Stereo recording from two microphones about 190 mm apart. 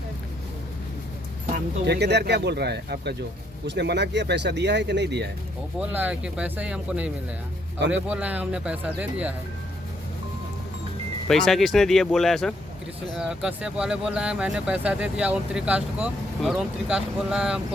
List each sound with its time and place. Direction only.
1.9 s speech: 60° right (ahead or behind)
5.9 s speech: 10° right (ahead or behind)
11.3 s speech: centre (ahead or behind)